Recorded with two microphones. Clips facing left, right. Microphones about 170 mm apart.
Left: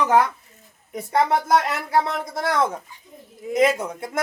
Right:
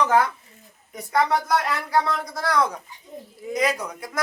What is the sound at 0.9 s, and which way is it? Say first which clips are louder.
Speech: left 2 dB; 25° left (ahead or behind).